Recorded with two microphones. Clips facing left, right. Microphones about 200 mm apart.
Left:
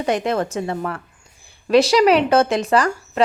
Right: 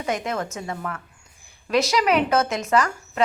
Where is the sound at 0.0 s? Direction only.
35° left (ahead or behind).